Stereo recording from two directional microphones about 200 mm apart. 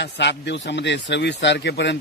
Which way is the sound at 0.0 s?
60° left (ahead or behind).